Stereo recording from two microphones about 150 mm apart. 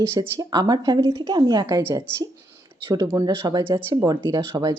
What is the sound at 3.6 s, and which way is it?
Speech, 15° right (ahead or behind).